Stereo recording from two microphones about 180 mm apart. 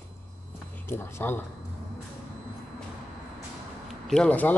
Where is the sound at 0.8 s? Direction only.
15° left (ahead or behind).